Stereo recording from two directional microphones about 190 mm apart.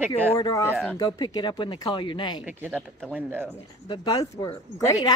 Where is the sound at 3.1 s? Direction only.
10° right (ahead or behind).